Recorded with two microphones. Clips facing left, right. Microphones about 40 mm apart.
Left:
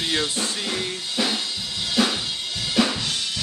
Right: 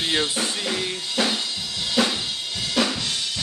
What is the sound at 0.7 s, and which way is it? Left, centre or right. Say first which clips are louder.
Speech: right 1 dB; centre.